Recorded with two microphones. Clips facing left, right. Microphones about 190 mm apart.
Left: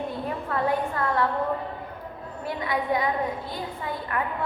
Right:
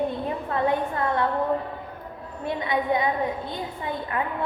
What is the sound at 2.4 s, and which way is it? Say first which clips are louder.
A woman's voice: right 2 dB; 25° right (ahead or behind).